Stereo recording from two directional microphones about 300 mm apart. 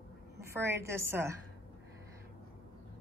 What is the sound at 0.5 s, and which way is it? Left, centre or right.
Speech, centre.